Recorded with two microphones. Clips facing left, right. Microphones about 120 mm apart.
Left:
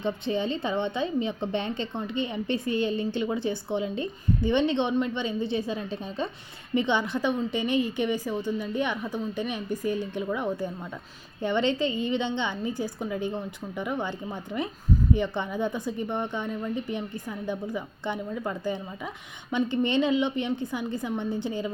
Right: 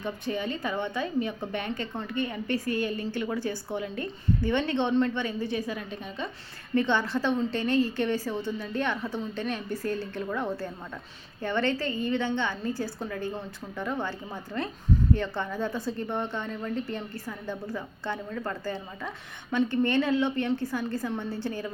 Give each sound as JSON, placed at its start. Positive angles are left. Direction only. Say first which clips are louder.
{"t": 0.0, "sound": "a woman's voice", "louder": "left 4 dB", "side_deg": 25}
{"t": 6.7, "sound": "a woman's voice", "louder": "even", "side_deg": 15}
{"t": 15.1, "sound": "a woman's voice", "louder": "left 2 dB", "side_deg": 15}